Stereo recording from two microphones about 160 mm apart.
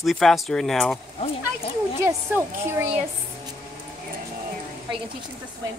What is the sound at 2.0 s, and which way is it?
Speech, 15° right (ahead or behind).